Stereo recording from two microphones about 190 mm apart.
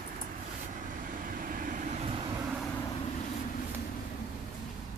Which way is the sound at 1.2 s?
45° right (ahead or behind).